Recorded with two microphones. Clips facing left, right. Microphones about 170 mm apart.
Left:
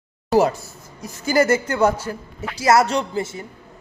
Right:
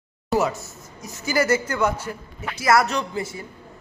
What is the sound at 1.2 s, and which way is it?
A man's voice, 30° left (ahead or behind).